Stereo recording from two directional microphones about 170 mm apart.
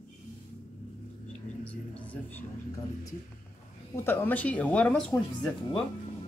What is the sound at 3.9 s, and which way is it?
Speech, 15° left (ahead or behind).